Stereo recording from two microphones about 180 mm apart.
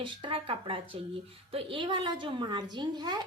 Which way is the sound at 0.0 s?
30° right (ahead or behind).